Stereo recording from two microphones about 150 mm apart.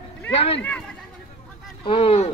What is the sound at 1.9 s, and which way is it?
Speech, 40° left (ahead or behind).